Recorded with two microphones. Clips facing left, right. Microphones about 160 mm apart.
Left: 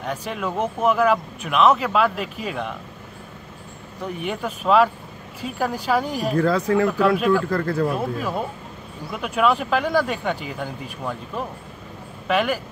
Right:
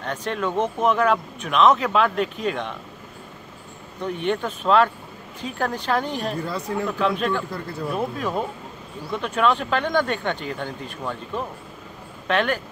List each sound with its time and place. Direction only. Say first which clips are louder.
0.0 s speech: right 1 dB; 10° left (ahead or behind)
4.0 s speech: right 3 dB; 5° left (ahead or behind)
6.3 s speech: left 8 dB; 90° left
7.0 s speech: left 5 dB; 5° left (ahead or behind)
7.4 s speech: left 8 dB; 90° left
8.2 s speech: even; 5° left (ahead or behind)